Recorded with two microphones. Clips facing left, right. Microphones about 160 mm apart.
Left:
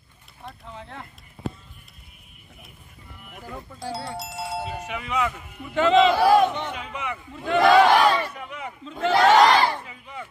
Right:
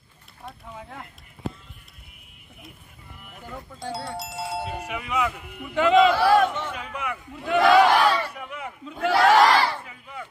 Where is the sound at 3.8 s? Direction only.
Centre (ahead or behind).